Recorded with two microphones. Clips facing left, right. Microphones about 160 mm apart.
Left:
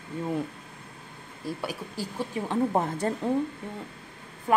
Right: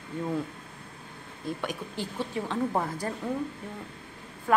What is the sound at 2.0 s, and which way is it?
Speech, 15° left (ahead or behind).